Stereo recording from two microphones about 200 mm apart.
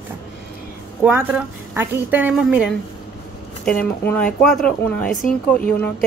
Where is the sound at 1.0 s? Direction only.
10° right (ahead or behind).